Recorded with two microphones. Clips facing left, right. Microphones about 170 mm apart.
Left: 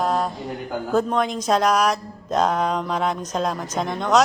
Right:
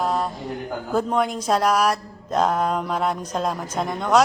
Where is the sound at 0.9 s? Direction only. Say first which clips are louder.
Left 1 dB; 10° right (ahead or behind).